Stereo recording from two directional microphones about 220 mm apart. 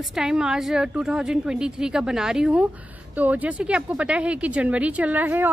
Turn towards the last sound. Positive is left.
turn(degrees=-10)  # may be behind; listen again after turning